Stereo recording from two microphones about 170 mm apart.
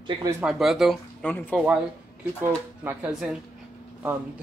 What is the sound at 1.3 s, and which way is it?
Speech, 10° left (ahead or behind).